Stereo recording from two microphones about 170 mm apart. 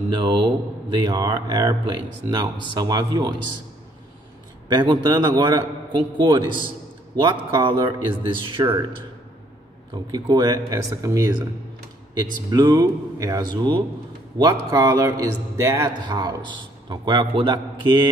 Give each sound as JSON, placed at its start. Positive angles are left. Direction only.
{"t": 0.1, "sound": "speech", "side_deg": -25}
{"t": 4.7, "sound": "speech", "side_deg": -25}
{"t": 10.1, "sound": "speech", "side_deg": -25}